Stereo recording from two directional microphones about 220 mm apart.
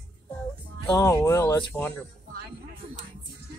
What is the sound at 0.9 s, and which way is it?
Speech, 15° left (ahead or behind).